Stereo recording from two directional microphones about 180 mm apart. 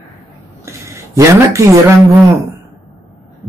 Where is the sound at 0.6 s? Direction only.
15° right (ahead or behind).